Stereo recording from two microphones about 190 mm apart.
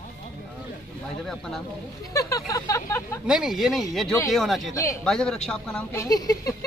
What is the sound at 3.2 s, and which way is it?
Speech, 5° right (ahead or behind).